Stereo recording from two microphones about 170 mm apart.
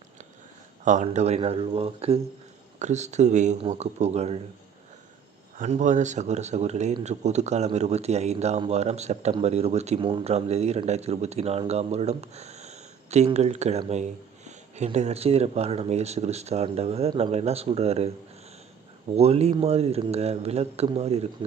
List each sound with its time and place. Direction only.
0.9 s speech: 45° right (ahead or behind)
5.5 s speech: 45° right (ahead or behind)
19.1 s speech: 35° right (ahead or behind)